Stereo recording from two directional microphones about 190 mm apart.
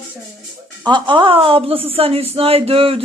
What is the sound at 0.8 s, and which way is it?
A woman's voice, 25° right (ahead or behind).